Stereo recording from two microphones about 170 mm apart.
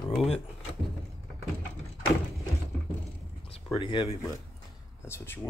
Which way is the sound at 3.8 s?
30° left (ahead or behind).